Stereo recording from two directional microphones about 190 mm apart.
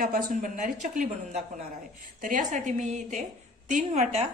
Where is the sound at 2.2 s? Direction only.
45° right (ahead or behind).